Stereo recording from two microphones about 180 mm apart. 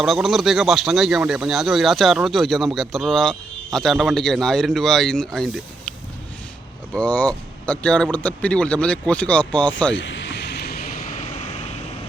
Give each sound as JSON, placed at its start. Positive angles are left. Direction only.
{"t": 0.0, "sound": "speech", "side_deg": 0}
{"t": 6.9, "sound": "speech", "side_deg": 5}
{"t": 9.9, "sound": "vehicle", "side_deg": 90}
{"t": 11.1, "sound": "vehicle", "side_deg": 40}